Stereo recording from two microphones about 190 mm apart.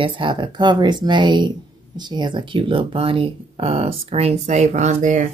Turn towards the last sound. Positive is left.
turn(degrees=-40)  # may be behind; listen again after turning